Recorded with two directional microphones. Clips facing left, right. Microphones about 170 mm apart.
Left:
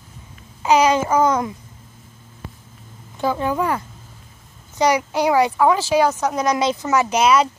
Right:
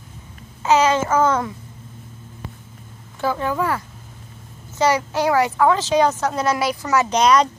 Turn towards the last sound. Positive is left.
turn(degrees=5)  # may be behind; listen again after turning